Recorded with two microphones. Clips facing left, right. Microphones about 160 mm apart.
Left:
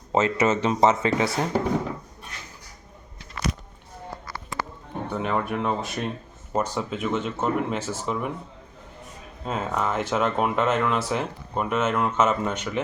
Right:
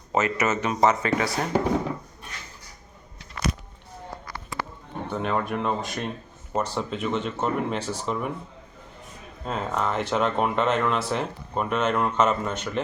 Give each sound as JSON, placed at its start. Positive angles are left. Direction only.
{"t": 0.1, "sound": "speech", "side_deg": 25}
{"t": 5.1, "sound": "speech", "side_deg": 5}
{"t": 9.4, "sound": "speech", "side_deg": 5}